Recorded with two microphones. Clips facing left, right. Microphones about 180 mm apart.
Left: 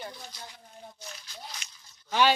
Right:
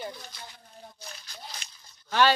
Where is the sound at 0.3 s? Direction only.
60° right (ahead or behind).